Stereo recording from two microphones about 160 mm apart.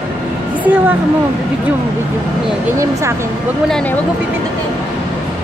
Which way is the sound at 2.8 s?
20° right (ahead or behind).